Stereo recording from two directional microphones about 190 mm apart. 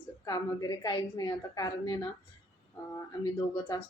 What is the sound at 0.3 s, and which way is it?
A woman's voice, 20° left (ahead or behind).